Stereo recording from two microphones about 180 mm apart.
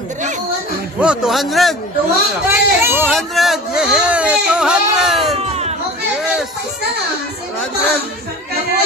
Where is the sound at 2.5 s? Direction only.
15° right (ahead or behind).